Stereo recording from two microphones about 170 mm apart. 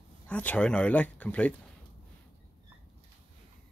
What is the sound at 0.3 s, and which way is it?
Speech, 10° left (ahead or behind).